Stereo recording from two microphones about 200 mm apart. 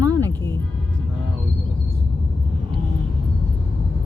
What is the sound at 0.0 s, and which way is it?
Music, 15° right (ahead or behind).